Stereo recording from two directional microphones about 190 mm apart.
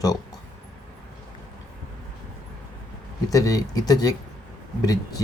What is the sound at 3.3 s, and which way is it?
Speech, 20° left (ahead or behind).